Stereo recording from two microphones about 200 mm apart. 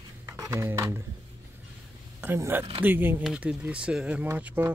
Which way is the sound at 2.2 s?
10° right (ahead or behind).